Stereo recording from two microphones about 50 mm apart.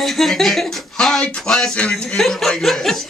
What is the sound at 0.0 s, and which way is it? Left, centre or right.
Speech, centre.